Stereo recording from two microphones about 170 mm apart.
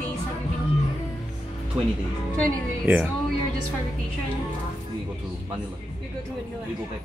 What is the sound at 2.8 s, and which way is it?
Speech, 10° right (ahead or behind).